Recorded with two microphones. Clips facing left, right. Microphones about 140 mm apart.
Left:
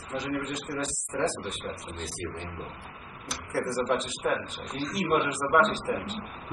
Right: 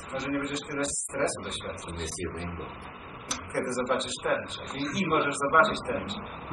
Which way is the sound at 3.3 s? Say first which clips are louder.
Even; centre (ahead or behind).